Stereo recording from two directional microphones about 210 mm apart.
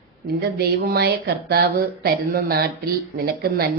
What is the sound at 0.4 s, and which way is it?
Speech, 50° right (ahead or behind).